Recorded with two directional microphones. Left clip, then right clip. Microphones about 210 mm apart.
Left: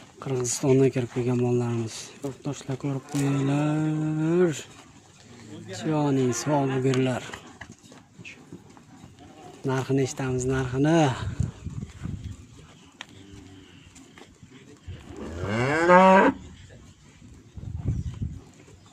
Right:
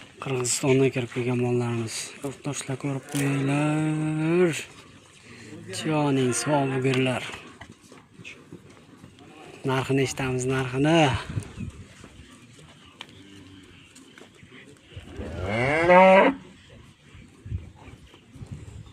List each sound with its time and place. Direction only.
0.2 s speech: 10° left (ahead or behind)
5.7 s speech: 10° left (ahead or behind)
9.6 s speech: 5° left (ahead or behind)
15.4 s moo: 50° left (ahead or behind)